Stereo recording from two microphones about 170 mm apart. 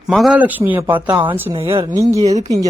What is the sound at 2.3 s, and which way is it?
Speech, 20° right (ahead or behind).